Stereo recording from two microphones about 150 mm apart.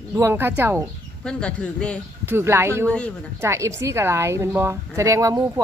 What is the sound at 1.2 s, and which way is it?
Speech, 5° left (ahead or behind).